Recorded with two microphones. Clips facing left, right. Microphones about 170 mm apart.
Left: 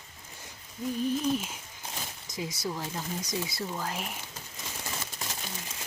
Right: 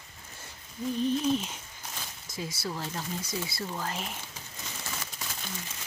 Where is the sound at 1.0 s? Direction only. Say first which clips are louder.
Right 1 dB; 5° left (ahead or behind).